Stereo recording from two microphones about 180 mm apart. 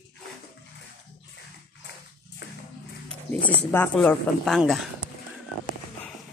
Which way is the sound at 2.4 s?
70° left (ahead or behind).